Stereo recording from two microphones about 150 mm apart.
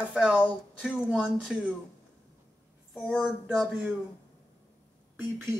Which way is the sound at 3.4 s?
5° right (ahead or behind).